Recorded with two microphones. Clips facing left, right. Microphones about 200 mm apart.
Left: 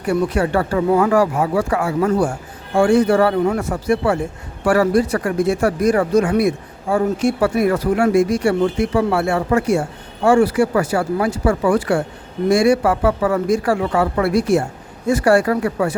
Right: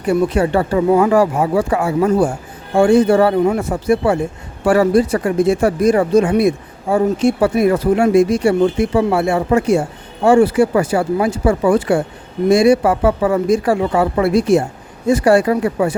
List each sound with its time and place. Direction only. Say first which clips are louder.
0.0 s speech: right 3 dB; 20° right (ahead or behind)